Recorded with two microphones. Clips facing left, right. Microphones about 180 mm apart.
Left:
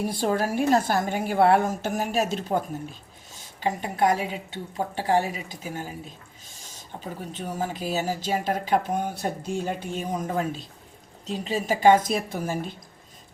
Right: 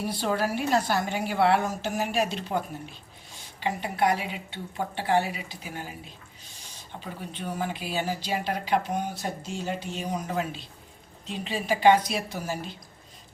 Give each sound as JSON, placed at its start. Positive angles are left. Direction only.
{"t": 0.0, "sound": "speech", "side_deg": 45}